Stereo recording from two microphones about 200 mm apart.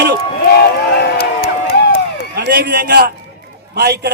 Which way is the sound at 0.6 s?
55° left (ahead or behind).